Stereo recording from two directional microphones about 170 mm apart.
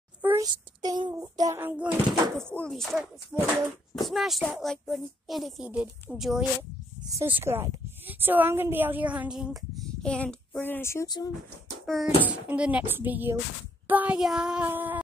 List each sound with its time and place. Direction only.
0.2 s a sound: 10° right (ahead or behind)
0.8 s speech: 25° right (ahead or behind)
2.5 s a woman's voice: 5° left (ahead or behind)
7.1 s speech: 15° right (ahead or behind); by 11.3 s 25° left (ahead or behind)
11.8 s a sound: 5° right (ahead or behind)
12.3 s speech: 5° right (ahead or behind)